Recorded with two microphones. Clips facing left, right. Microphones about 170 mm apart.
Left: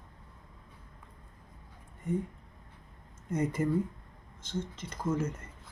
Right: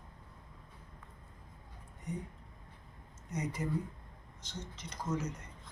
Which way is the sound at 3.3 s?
50° left (ahead or behind).